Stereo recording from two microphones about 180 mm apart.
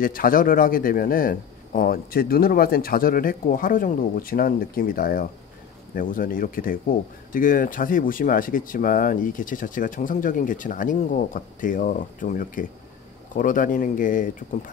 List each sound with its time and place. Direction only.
0.0 s speech: 50° left (ahead or behind)